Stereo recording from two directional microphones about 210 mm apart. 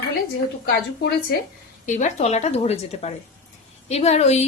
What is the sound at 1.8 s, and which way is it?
A woman's voice, 35° left (ahead or behind).